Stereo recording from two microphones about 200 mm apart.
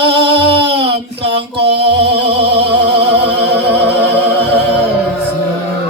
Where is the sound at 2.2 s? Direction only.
30° right (ahead or behind).